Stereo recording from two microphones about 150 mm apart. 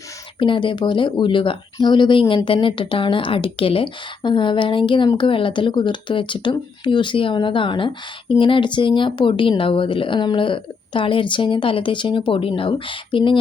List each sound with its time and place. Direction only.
0.3 s speech: 35° left (ahead or behind)